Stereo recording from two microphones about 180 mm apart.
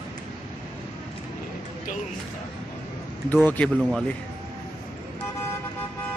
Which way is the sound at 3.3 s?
10° left (ahead or behind).